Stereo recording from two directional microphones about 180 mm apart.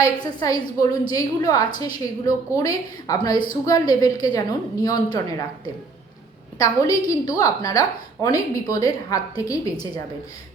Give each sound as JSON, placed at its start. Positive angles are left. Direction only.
{"t": 0.0, "sound": "a woman's voice", "side_deg": 20}
{"t": 6.6, "sound": "a woman's voice", "side_deg": 20}